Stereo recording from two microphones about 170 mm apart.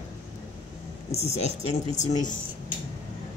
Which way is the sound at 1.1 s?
40° left (ahead or behind).